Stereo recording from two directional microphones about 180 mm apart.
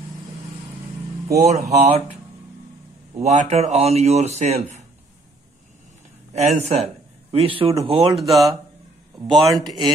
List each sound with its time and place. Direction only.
1.4 s speech: 40° right (ahead or behind)
3.2 s speech: 40° right (ahead or behind)
6.3 s speech: 35° right (ahead or behind)
8.2 s a man's voice: centre (ahead or behind)
9.5 s speech: 25° right (ahead or behind)